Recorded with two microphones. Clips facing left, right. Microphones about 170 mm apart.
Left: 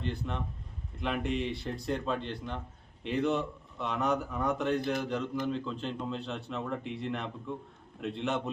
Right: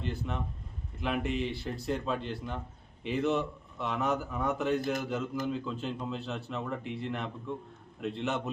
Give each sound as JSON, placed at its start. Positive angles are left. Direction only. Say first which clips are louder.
{"t": 0.0, "sound": "a man's voice", "louder": "even", "side_deg": 0}